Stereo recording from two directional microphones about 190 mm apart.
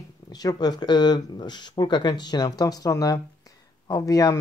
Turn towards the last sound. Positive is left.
turn(degrees=20)  # may be behind; listen again after turning